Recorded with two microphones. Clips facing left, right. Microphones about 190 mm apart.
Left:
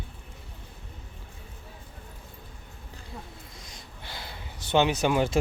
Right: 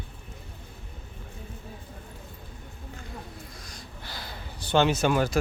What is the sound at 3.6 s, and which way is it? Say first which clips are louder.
Sniff: right 2 dB; 25° left (ahead or behind).